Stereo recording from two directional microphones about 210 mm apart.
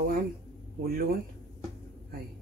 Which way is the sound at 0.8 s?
45° right (ahead or behind).